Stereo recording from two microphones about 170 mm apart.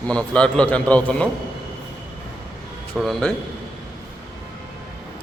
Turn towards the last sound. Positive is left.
turn(degrees=0)  # may be behind; listen again after turning